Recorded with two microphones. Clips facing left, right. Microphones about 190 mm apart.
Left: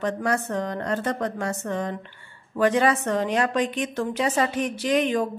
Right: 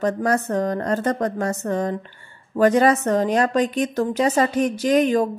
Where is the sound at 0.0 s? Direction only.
40° right (ahead or behind).